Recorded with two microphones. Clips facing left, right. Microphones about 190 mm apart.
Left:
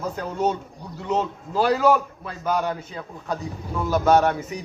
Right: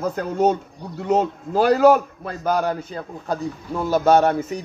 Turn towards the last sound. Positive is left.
turn(degrees=-30)  # may be behind; listen again after turning